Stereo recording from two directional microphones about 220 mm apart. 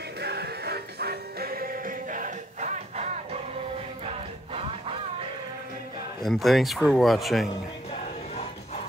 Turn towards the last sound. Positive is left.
turn(degrees=0)  # may be behind; listen again after turning